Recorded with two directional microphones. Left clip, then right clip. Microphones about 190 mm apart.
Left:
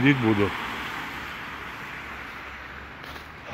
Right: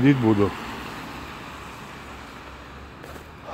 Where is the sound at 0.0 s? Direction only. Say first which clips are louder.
Right 2 dB; 5° right (ahead or behind).